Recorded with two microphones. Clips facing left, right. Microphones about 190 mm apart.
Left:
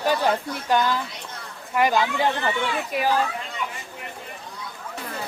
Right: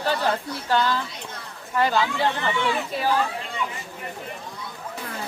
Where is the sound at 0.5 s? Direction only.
15° left (ahead or behind).